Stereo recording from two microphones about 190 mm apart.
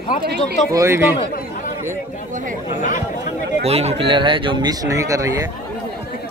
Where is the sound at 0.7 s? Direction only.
15° right (ahead or behind).